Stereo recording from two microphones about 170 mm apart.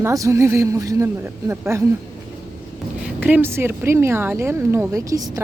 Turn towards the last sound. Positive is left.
turn(degrees=-20)  # may be behind; listen again after turning